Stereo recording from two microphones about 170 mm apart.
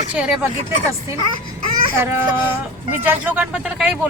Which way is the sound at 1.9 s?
15° right (ahead or behind).